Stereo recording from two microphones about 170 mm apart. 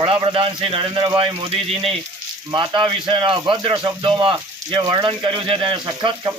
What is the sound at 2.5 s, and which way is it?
Speech, 25° right (ahead or behind).